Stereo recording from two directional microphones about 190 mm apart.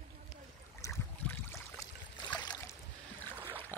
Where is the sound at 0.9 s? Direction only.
15° left (ahead or behind).